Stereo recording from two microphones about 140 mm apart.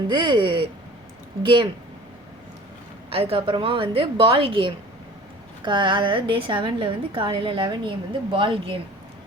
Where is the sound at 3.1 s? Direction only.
45° right (ahead or behind).